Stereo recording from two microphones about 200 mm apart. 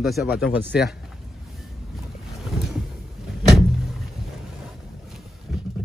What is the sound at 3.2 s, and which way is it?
Door, centre (ahead or behind).